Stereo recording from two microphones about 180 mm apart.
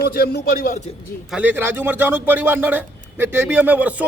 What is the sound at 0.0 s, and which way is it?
Speech, 60° left (ahead or behind).